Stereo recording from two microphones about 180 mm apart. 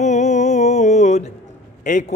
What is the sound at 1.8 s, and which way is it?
Speech, 45° left (ahead or behind).